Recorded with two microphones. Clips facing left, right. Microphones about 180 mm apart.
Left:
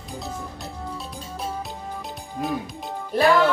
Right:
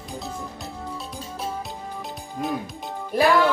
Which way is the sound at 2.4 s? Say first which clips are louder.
Even; centre (ahead or behind).